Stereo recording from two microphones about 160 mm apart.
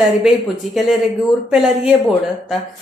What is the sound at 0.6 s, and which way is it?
A woman's voice, centre (ahead or behind).